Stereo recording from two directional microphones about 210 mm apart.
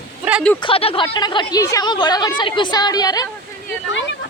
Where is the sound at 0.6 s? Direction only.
25° left (ahead or behind).